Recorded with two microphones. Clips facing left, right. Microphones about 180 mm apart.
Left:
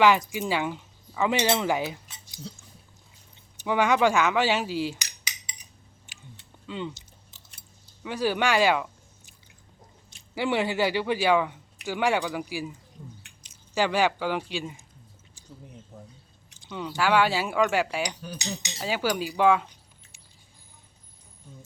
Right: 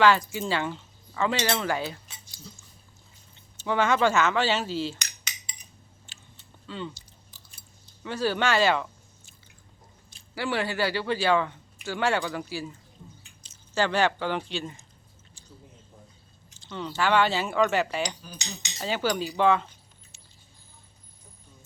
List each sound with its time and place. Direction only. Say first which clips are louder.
0.0 s speech: left 1 dB; 15° left (ahead or behind)
3.6 s speech: left 1 dB; 15° left (ahead or behind)
6.1 s chewing: left 8 dB; 15° left (ahead or behind)
8.0 s speech: left 1 dB; 15° left (ahead or behind)
10.2 s speech: left 3 dB; 20° left (ahead or behind)
16.6 s speech: left 1 dB; 10° left (ahead or behind)